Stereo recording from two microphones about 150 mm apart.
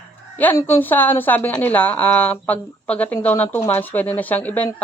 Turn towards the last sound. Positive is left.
turn(degrees=10)  # may be behind; listen again after turning